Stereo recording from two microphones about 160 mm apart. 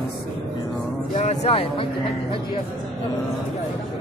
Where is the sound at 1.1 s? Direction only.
45° left (ahead or behind).